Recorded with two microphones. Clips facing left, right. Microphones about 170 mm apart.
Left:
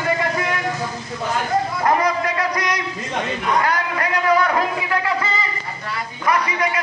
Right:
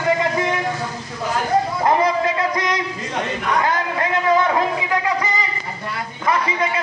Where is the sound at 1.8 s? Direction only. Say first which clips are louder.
Right 1 dB; 25° right (ahead or behind).